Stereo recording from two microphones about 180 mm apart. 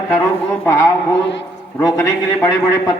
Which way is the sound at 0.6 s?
10° left (ahead or behind).